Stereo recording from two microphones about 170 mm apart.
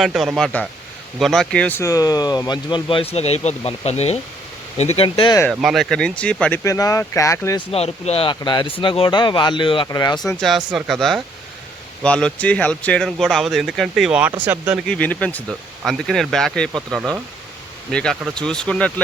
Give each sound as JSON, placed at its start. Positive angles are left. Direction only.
{"t": 0.0, "sound": "speech", "side_deg": 0}
{"t": 5.5, "sound": "speech", "side_deg": 0}
{"t": 6.7, "sound": "speech", "side_deg": 20}
{"t": 7.7, "sound": "speech", "side_deg": 35}
{"t": 10.3, "sound": "speech", "side_deg": 0}
{"t": 14.8, "sound": "speech", "side_deg": 10}